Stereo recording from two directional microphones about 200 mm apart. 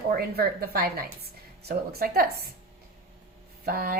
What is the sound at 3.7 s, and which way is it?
Speech, 50° right (ahead or behind).